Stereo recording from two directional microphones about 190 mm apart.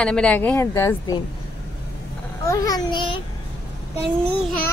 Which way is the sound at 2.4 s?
20° left (ahead or behind).